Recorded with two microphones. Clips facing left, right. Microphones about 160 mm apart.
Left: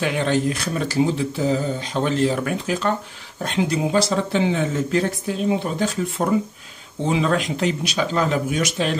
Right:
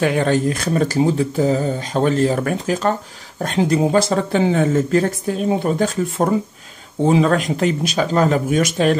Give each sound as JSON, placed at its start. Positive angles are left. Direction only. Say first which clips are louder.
{"t": 0.0, "sound": "speech", "louder": "right 4 dB", "side_deg": -45}